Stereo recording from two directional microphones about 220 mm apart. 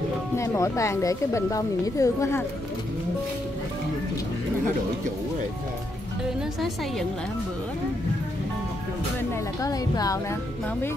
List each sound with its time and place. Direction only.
0.4 s a woman's voice: 15° left (ahead or behind)
9.3 s a woman's voice: 15° left (ahead or behind)